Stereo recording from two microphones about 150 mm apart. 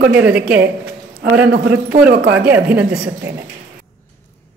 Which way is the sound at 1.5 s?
80° right.